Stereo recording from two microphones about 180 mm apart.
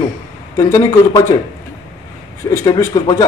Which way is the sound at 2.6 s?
20° left (ahead or behind).